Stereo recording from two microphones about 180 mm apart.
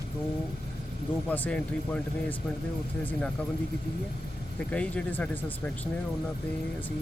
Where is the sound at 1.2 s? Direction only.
10° left (ahead or behind).